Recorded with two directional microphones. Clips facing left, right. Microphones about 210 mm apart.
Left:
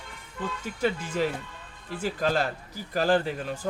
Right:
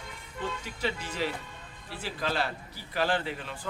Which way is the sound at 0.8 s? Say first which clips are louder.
Left 6 dB; 50° left (ahead or behind).